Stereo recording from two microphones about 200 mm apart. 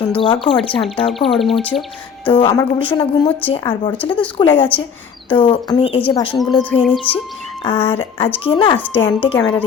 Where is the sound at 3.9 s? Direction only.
5° left (ahead or behind).